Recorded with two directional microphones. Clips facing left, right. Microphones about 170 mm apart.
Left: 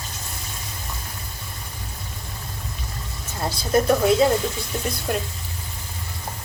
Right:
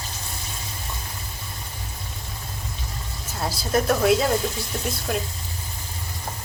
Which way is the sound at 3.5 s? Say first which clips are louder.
Left 3 dB; centre (ahead or behind).